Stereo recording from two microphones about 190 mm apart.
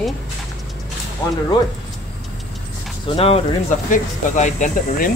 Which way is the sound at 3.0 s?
30° left (ahead or behind).